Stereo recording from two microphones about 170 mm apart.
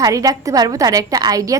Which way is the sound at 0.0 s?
20° right (ahead or behind).